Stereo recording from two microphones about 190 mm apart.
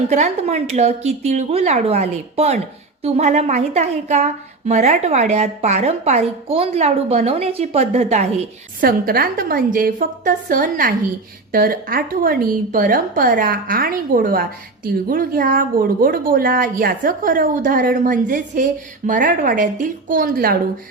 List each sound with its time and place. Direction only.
0.1 s a woman's voice: 35° right (ahead or behind)
8.8 s a woman's voice: 50° right (ahead or behind)